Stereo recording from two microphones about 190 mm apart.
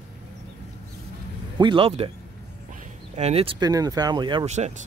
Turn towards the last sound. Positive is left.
turn(degrees=-35)  # may be behind; listen again after turning